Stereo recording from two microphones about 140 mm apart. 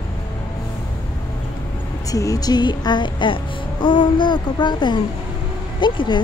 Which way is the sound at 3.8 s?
35° left (ahead or behind).